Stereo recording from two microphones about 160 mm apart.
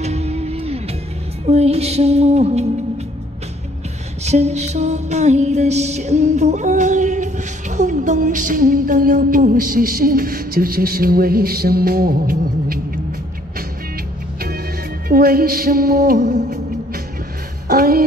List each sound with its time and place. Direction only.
0.0 s music: 40° right (ahead or behind)
4.2 s music: 45° right (ahead or behind); by 13.0 s 65° right (ahead or behind)
15.0 s music: 65° right (ahead or behind)
17.6 s speech: 70° right (ahead or behind)